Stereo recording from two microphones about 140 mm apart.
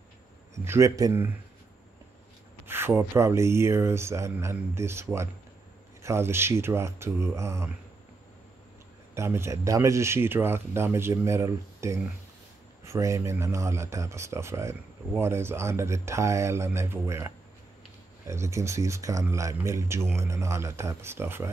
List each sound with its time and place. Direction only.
0.7 s speech: 20° right (ahead or behind)
2.6 s speech: 15° right (ahead or behind)
9.1 s speech: 20° right (ahead or behind)